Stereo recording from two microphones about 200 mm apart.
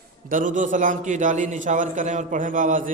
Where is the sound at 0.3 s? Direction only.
40° right (ahead or behind).